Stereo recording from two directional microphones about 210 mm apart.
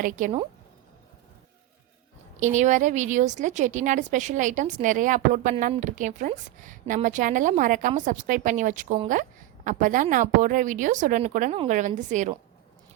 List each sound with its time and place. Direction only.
0.0 s a woman's voice: 40° right (ahead or behind)
2.4 s a woman's voice: 35° right (ahead or behind)